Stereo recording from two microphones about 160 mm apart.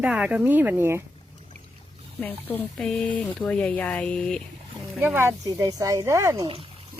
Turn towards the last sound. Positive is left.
turn(degrees=-20)  # may be behind; listen again after turning